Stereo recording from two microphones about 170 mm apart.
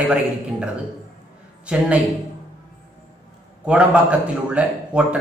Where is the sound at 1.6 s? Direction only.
5° right (ahead or behind).